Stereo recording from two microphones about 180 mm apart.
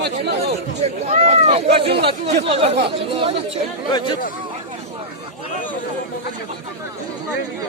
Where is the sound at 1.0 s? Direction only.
35° right (ahead or behind).